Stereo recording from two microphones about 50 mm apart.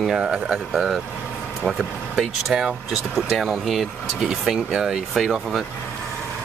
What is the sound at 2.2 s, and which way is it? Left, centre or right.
Speech, centre.